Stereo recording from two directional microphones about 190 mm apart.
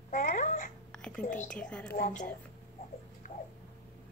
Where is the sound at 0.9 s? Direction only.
5° left (ahead or behind).